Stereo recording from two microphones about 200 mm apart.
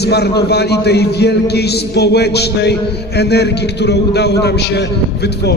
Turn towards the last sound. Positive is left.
turn(degrees=55)  # may be behind; listen again after turning